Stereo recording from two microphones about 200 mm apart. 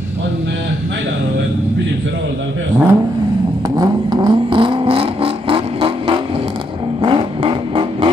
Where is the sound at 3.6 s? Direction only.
20° right (ahead or behind).